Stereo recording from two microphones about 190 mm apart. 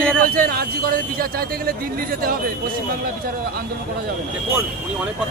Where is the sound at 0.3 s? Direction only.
50° right (ahead or behind).